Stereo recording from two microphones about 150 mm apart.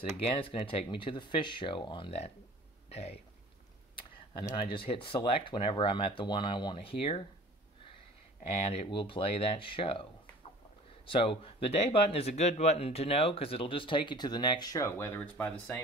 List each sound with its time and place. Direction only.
0.2 s speech: 35° left (ahead or behind)
3.9 s a sound: 25° left (ahead or behind)
4.7 s speech: 35° left (ahead or behind)
8.4 s speech: 50° left (ahead or behind)
8.9 s speech: 35° left (ahead or behind)
11.1 s speech: 35° left (ahead or behind); by 15.7 s 10° left (ahead or behind)